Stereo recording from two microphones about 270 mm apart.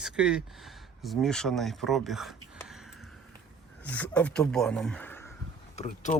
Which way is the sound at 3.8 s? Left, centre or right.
Centre.